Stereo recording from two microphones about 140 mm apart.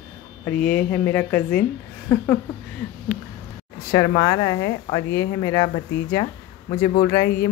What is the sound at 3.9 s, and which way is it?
Speech, 25° left (ahead or behind).